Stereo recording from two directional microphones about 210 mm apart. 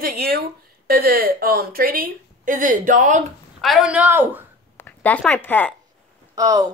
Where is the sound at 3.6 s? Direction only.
Centre (ahead or behind).